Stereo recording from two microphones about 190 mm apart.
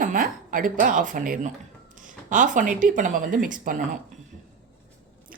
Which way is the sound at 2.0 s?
45° right (ahead or behind).